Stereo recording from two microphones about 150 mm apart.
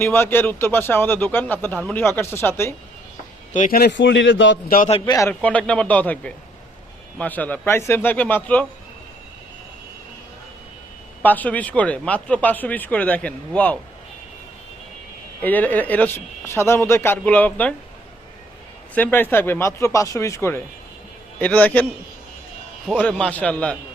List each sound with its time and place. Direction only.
0.0 s speech: 15° left (ahead or behind)
3.7 s a man's voice: 90° left
4.9 s speech: 40° left (ahead or behind)
5.3 s speech: 10° left (ahead or behind)
11.2 s speech: 10° left (ahead or behind)
15.4 s speech: 10° left (ahead or behind)
18.9 s speech: 15° left (ahead or behind)
23.0 s speech: 10° left (ahead or behind)